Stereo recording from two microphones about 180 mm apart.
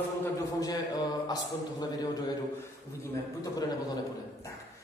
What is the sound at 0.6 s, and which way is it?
A man's voice, 20° left (ahead or behind).